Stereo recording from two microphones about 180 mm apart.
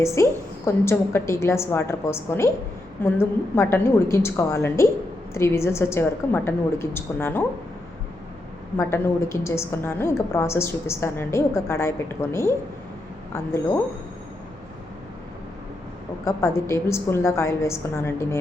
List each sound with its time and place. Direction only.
0.0 s a woman's voice: 15° left (ahead or behind)
8.8 s a woman's voice: 15° left (ahead or behind)
16.3 s a woman's voice: 15° left (ahead or behind)